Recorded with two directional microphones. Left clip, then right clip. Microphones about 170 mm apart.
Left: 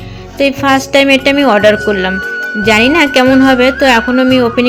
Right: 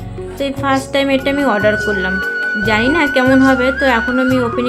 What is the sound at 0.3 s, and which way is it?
Speech, 25° left (ahead or behind).